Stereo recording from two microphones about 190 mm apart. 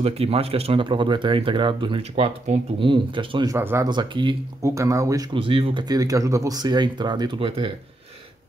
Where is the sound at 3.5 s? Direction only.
15° right (ahead or behind); by 7.7 s 30° right (ahead or behind).